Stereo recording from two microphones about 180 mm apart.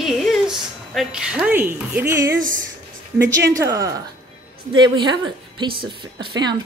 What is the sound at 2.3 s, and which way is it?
Speech, 50° right (ahead or behind).